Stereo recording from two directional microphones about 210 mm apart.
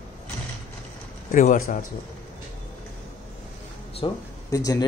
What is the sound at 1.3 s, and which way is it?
Speech, 40° left (ahead or behind).